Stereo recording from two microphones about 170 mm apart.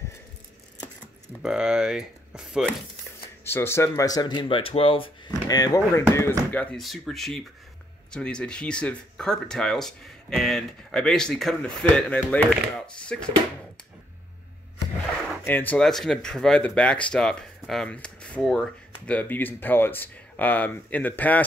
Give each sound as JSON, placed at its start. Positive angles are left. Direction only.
{"t": 1.4, "sound": "speech", "side_deg": -5}
{"t": 3.4, "sound": "speech", "side_deg": 15}
{"t": 15.4, "sound": "speech", "side_deg": 10}